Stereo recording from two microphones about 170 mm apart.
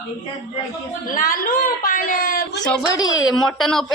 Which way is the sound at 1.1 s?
55° left (ahead or behind).